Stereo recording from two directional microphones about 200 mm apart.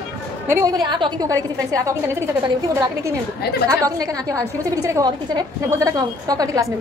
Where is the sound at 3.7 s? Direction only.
15° right (ahead or behind).